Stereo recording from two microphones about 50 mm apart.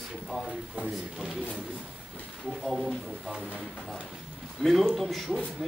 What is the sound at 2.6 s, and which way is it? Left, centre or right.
Speech, centre.